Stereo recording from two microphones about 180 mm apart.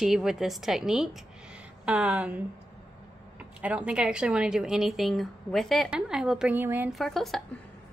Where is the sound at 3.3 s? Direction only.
5° right (ahead or behind).